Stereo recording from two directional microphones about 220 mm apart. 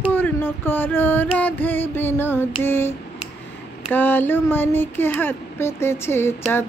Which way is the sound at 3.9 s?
10° left (ahead or behind).